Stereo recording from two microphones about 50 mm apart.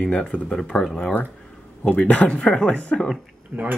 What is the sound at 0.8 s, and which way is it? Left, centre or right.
Speech, centre.